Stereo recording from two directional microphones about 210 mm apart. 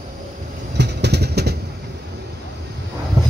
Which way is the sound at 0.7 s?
55° right (ahead or behind).